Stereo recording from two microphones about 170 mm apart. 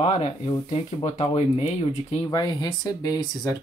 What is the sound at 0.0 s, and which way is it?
Speech, 35° left (ahead or behind).